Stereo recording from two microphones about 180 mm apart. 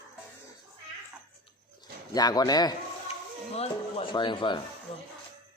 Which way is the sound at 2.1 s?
20° left (ahead or behind).